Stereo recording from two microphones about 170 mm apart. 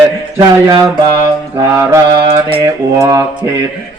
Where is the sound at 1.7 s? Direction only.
15° right (ahead or behind).